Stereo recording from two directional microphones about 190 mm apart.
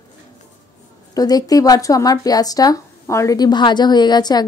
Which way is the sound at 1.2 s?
20° left (ahead or behind).